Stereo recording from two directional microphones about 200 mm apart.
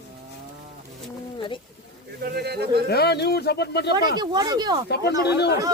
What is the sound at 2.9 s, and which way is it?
Speech, 55° left (ahead or behind).